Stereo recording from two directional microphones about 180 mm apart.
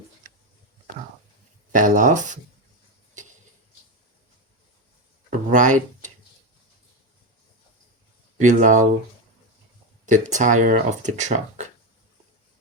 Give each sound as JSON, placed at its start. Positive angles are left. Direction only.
{"t": 1.7, "sound": "speech", "side_deg": -45}
{"t": 5.3, "sound": "speech", "side_deg": -45}
{"t": 8.4, "sound": "speech", "side_deg": -45}
{"t": 10.1, "sound": "speech", "side_deg": -45}